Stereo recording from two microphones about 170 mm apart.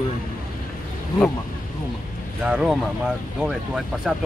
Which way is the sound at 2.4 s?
5° right (ahead or behind).